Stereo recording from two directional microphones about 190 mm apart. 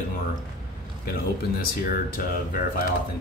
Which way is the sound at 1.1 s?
50° left (ahead or behind).